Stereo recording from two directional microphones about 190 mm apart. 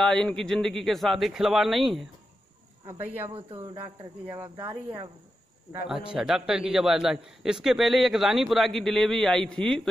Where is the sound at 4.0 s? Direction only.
20° right (ahead or behind).